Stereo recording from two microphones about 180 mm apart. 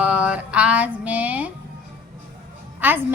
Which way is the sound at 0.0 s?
5° right (ahead or behind).